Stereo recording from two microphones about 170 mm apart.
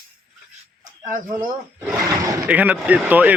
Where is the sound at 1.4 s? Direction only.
10° right (ahead or behind).